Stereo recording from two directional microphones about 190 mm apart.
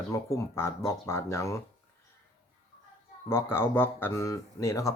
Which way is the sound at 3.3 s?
15° left (ahead or behind).